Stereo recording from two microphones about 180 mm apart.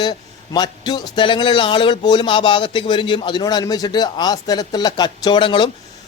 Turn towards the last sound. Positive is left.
turn(degrees=25)  # may be behind; listen again after turning